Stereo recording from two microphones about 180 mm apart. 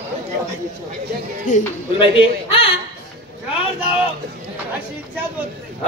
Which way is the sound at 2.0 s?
30° left (ahead or behind).